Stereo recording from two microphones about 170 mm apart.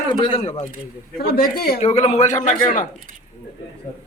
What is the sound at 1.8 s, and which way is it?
A man's voice, 40° left (ahead or behind).